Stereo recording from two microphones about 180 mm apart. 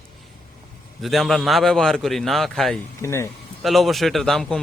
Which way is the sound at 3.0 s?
15° left (ahead or behind).